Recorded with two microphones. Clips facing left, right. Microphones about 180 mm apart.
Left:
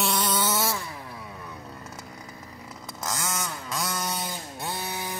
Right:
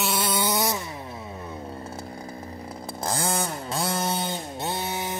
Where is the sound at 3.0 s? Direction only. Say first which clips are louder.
Right 5 dB; 30° right (ahead or behind).